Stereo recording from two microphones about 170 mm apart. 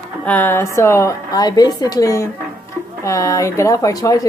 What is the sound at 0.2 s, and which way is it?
Speech, 10° left (ahead or behind).